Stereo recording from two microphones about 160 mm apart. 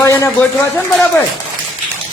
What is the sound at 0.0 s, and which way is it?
Speech, 20° left (ahead or behind).